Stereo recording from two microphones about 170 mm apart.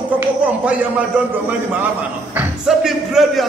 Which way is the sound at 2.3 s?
Centre (ahead or behind).